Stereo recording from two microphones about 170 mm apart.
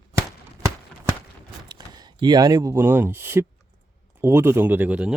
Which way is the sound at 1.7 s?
25° right (ahead or behind).